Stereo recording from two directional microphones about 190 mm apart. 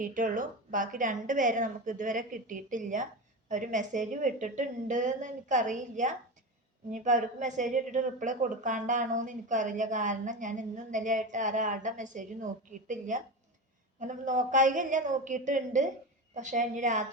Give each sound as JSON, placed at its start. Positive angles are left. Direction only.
{"t": 0.0, "sound": "a woman's voice", "side_deg": -45}